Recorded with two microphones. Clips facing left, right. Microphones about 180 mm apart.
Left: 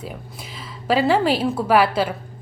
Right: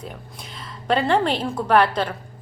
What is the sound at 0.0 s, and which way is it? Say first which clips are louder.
A woman's voice: left 2 dB; 5° left (ahead or behind).